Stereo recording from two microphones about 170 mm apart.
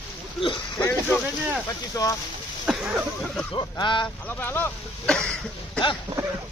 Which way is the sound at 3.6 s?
30° left (ahead or behind).